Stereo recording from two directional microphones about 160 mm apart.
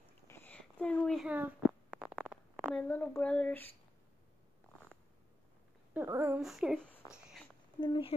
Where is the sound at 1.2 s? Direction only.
10° right (ahead or behind).